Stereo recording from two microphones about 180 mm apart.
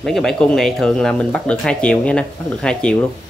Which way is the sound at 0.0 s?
Centre (ahead or behind).